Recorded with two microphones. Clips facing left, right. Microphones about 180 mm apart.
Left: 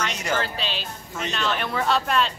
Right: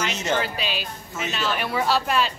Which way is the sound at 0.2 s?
15° right (ahead or behind).